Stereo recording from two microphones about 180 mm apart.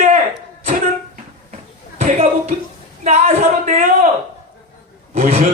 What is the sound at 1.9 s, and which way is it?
Speech, 35° right (ahead or behind).